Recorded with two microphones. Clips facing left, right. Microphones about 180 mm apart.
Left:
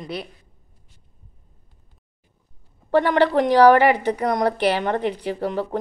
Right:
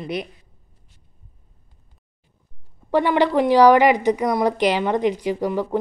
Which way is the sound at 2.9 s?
15° right (ahead or behind).